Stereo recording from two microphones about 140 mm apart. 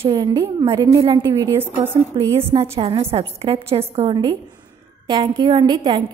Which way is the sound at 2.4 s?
45° right (ahead or behind).